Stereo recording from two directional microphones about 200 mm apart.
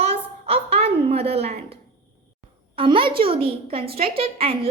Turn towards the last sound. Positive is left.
turn(degrees=-30)  # may be behind; listen again after turning